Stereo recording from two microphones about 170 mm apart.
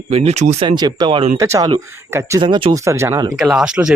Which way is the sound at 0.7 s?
25° right (ahead or behind).